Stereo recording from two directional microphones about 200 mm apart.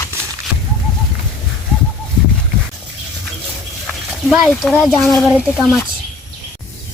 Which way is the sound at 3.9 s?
Centre (ahead or behind).